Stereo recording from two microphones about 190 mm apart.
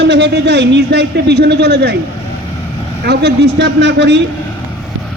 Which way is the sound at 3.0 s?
60° right (ahead or behind).